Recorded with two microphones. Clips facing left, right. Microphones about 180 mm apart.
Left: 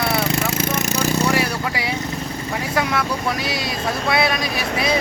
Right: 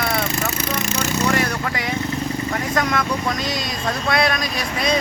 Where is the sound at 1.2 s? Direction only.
10° left (ahead or behind).